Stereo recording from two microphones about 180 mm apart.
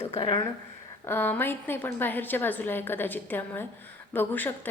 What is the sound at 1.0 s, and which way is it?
A woman's voice, 10° left (ahead or behind).